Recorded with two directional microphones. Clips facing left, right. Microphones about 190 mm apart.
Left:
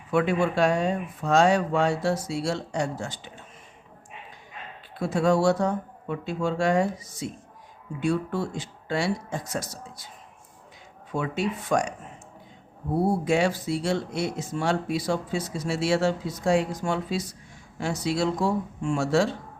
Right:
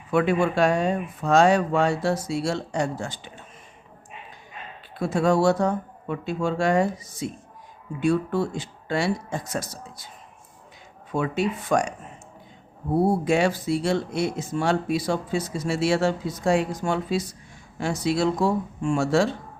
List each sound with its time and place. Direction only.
0.1 s speech: 55° right (ahead or behind)
4.9 s speech: 55° right (ahead or behind)
11.2 s speech: 55° right (ahead or behind)
13.2 s speech: 55° right (ahead or behind)